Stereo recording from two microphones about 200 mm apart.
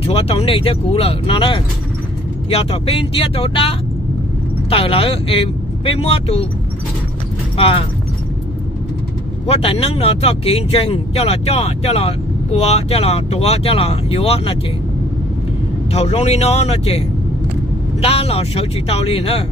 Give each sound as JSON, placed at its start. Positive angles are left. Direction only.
{"t": 0.0, "sound": "speech", "side_deg": 30}
{"t": 7.5, "sound": "speech", "side_deg": 25}
{"t": 9.5, "sound": "speech", "side_deg": 30}
{"t": 15.9, "sound": "speech", "side_deg": 30}
{"t": 18.0, "sound": "speech", "side_deg": 30}